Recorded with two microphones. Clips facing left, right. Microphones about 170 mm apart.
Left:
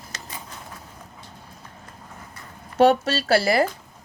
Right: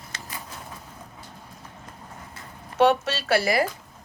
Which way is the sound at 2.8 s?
35° left (ahead or behind).